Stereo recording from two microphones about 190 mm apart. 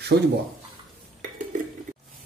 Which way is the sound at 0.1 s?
50° right (ahead or behind).